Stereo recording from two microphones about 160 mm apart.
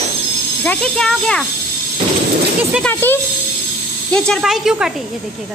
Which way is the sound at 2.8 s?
10° left (ahead or behind).